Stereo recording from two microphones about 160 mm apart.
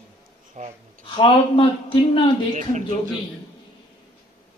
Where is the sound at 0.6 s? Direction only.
45° right (ahead or behind).